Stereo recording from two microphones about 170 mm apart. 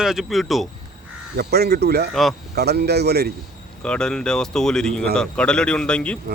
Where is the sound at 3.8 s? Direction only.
5° left (ahead or behind).